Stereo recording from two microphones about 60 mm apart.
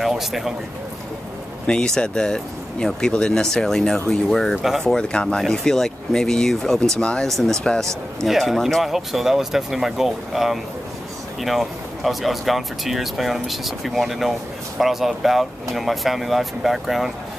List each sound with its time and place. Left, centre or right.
0.0 s speech: centre
1.7 s speech: centre
4.6 s speech: centre
4.8 s speech: centre
6.8 s speech: centre
7.2 s speech: centre